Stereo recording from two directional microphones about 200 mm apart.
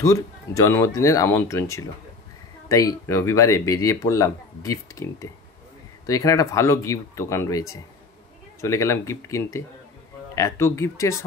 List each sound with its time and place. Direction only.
0.0 s speech: 15° left (ahead or behind)